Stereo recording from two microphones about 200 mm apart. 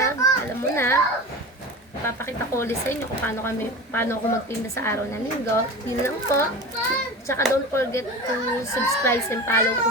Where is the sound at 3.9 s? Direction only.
10° left (ahead or behind).